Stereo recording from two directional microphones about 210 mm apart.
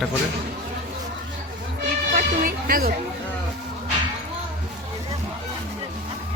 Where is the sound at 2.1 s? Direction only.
40° right (ahead or behind).